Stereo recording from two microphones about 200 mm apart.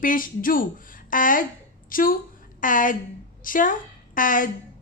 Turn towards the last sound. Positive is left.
turn(degrees=40)  # may be behind; listen again after turning